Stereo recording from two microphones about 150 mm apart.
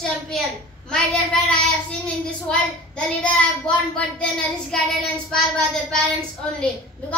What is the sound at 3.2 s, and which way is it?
Speech, 10° left (ahead or behind).